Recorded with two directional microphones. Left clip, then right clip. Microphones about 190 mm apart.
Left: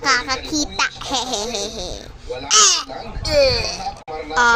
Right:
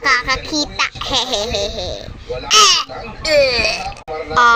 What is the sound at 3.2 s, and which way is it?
Speech, 10° left (ahead or behind).